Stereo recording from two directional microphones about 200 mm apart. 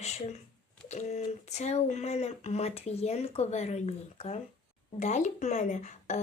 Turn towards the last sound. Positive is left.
turn(degrees=35)  # may be behind; listen again after turning